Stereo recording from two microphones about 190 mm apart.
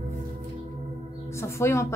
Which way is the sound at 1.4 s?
15° left (ahead or behind).